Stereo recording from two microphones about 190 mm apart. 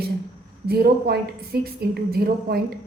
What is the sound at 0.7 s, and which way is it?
A woman's voice, 55° right (ahead or behind).